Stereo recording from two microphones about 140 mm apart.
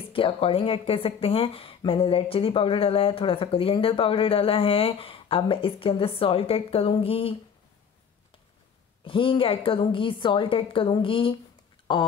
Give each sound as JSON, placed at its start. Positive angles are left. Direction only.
{"t": 0.0, "sound": "speech", "side_deg": 40}
{"t": 9.0, "sound": "speech", "side_deg": 40}